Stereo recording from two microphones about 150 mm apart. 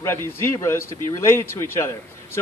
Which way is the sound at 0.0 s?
15° left (ahead or behind).